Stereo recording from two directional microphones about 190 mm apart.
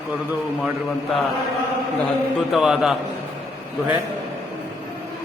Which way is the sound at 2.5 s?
Centre (ahead or behind).